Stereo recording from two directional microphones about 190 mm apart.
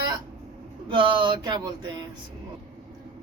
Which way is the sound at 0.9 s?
25° right (ahead or behind).